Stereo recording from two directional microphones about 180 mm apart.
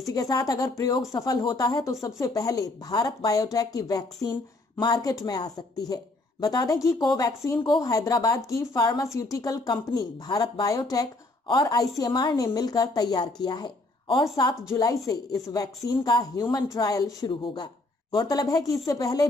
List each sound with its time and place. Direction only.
0.0 s a woman's voice: 20° left (ahead or behind)